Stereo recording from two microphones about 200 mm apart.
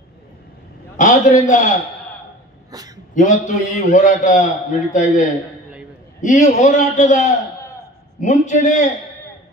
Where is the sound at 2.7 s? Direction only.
20° right (ahead or behind).